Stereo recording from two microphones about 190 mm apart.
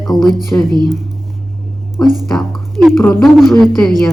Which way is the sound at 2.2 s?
Centre (ahead or behind).